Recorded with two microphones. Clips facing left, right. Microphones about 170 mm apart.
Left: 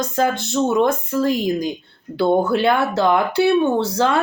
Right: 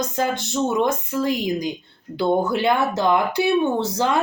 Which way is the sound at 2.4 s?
20° right (ahead or behind).